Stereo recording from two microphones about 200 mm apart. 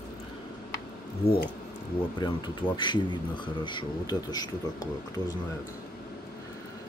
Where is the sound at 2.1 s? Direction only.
20° left (ahead or behind).